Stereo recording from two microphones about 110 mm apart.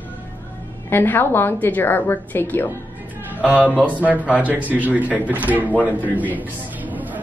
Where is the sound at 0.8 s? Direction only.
20° left (ahead or behind).